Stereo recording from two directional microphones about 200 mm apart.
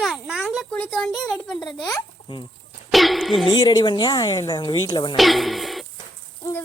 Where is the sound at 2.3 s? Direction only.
25° left (ahead or behind).